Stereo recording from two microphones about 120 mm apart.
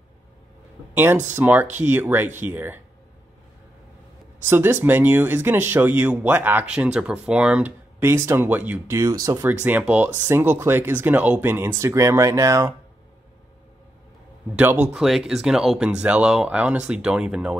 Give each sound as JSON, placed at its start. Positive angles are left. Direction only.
{"t": 0.9, "sound": "speech", "side_deg": -15}
{"t": 4.5, "sound": "speech", "side_deg": -15}
{"t": 8.0, "sound": "speech", "side_deg": -20}
{"t": 9.4, "sound": "speech", "side_deg": -15}
{"t": 14.5, "sound": "speech", "side_deg": -15}
{"t": 15.0, "sound": "speech", "side_deg": -5}